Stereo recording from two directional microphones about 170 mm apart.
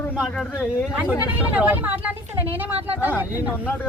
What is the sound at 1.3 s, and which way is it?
Speech, 10° right (ahead or behind).